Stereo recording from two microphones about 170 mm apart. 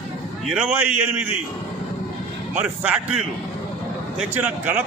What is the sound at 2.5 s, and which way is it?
A man's voice, 10° right (ahead or behind).